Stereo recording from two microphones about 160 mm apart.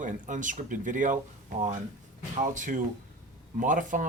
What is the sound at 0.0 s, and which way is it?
Speech, 55° right (ahead or behind).